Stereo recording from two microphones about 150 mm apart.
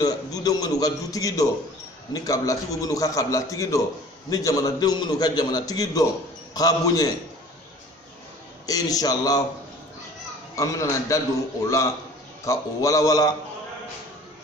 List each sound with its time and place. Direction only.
0.0 s a man's voice: 25° left (ahead or behind)
8.6 s a man's voice: 25° left (ahead or behind)
10.5 s a man's voice: 20° left (ahead or behind)